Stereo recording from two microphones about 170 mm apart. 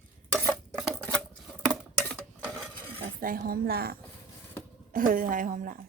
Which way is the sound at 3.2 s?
60° right (ahead or behind).